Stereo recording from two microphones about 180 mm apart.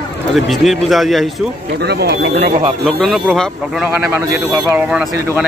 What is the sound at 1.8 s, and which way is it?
Speech, 65° right (ahead or behind).